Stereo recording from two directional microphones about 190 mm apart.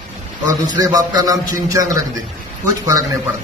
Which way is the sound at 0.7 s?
20° right (ahead or behind).